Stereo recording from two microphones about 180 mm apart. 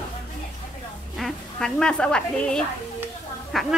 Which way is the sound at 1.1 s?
5° left (ahead or behind).